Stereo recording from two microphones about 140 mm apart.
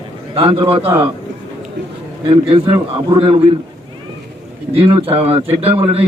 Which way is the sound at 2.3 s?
40° right (ahead or behind).